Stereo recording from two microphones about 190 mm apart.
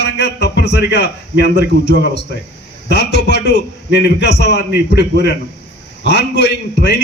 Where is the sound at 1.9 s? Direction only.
65° left (ahead or behind).